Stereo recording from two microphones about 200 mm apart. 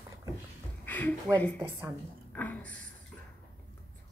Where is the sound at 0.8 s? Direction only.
10° left (ahead or behind).